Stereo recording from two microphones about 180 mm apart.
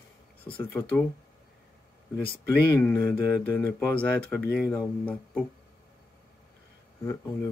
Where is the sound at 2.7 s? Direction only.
15° left (ahead or behind).